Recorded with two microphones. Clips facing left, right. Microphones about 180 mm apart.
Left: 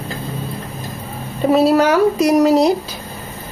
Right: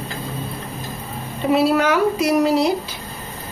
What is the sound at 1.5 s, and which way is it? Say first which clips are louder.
Speech: left 4 dB; 40° left (ahead or behind).